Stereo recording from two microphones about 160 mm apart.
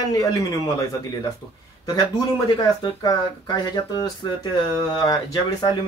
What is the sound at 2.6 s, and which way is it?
Speech, 25° left (ahead or behind).